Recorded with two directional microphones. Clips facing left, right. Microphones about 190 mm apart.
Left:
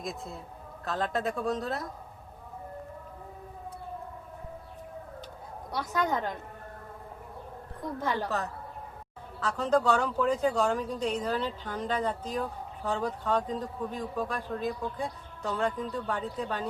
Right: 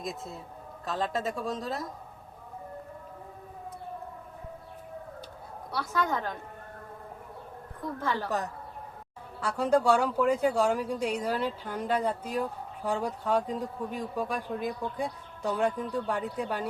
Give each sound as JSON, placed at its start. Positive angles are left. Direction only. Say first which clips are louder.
{"t": 0.0, "sound": "speech", "louder": "even", "side_deg": 0}
{"t": 5.7, "sound": "a woman's voice", "louder": "even", "side_deg": 15}
{"t": 7.9, "sound": "a woman's voice", "louder": "left 1 dB", "side_deg": 15}
{"t": 9.4, "sound": "speech", "louder": "right 1 dB", "side_deg": -10}